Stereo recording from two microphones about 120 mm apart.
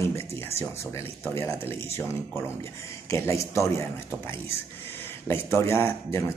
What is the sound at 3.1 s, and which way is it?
Speech, 25° left (ahead or behind).